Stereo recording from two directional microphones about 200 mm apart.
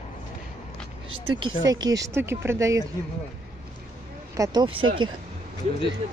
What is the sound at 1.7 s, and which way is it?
Speech, 20° right (ahead or behind).